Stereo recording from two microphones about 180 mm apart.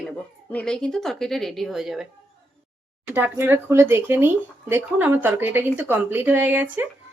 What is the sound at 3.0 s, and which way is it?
Speech, 10° right (ahead or behind).